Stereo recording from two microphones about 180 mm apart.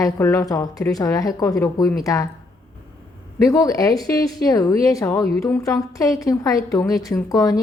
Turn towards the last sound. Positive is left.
turn(degrees=20)  # may be behind; listen again after turning